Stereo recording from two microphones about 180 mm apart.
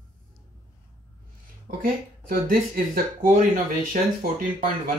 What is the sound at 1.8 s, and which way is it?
Speech, 50° right (ahead or behind).